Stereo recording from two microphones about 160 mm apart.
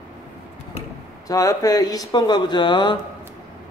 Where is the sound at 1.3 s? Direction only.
20° left (ahead or behind).